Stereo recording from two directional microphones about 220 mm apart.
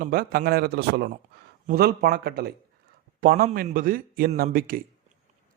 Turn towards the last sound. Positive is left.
turn(degrees=-40)  # may be behind; listen again after turning